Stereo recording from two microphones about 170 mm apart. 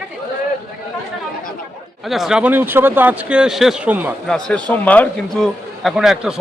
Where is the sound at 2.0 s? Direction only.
Centre (ahead or behind).